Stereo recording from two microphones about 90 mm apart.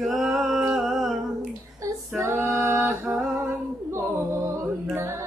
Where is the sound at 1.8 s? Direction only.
40° right (ahead or behind).